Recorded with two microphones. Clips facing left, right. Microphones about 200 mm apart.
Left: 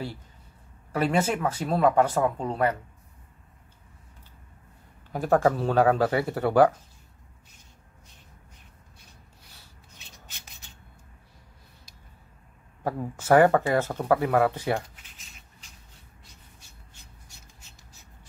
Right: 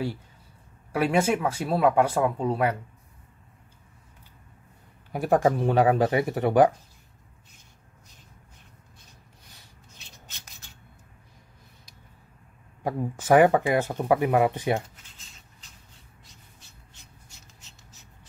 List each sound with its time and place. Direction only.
0.9 s speech: 10° right (ahead or behind)
5.1 s speech: 15° right (ahead or behind)
12.8 s speech: 15° right (ahead or behind)